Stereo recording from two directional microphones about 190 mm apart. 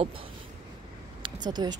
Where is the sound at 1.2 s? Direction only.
20° right (ahead or behind).